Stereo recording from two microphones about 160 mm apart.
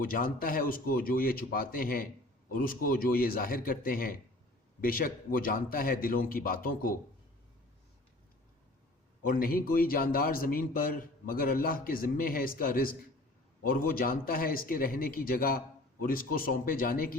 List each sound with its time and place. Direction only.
0.0 s a man's voice: 65° left (ahead or behind)
9.2 s a man's voice: 65° left (ahead or behind)